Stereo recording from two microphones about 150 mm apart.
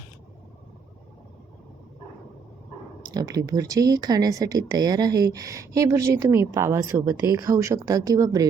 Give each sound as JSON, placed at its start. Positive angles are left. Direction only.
{"t": 3.0, "sound": "speech", "side_deg": -25}